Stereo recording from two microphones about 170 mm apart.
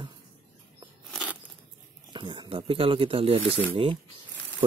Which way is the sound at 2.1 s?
30° right (ahead or behind).